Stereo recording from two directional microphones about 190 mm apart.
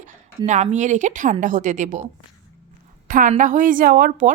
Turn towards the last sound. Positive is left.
turn(degrees=-50)  # may be behind; listen again after turning